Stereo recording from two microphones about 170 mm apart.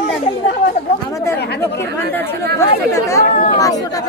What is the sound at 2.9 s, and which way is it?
Speech, 15° left (ahead or behind).